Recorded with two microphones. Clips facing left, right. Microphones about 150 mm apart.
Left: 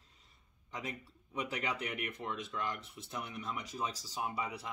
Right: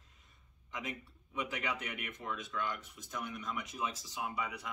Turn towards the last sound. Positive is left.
turn(degrees=30)  # may be behind; listen again after turning